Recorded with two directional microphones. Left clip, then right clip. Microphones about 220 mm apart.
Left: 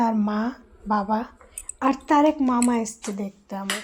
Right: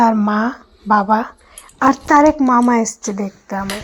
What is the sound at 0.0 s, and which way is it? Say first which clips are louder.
A woman's voice: right 10 dB; 15° right (ahead or behind).